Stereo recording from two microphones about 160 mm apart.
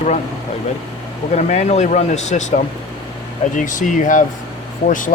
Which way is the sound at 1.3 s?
45° left (ahead or behind).